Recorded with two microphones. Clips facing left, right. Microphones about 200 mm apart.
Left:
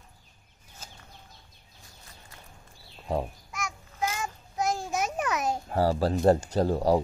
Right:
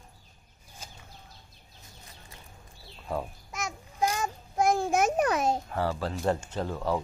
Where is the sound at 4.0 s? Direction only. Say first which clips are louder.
Right 3 dB; 35° right (ahead or behind).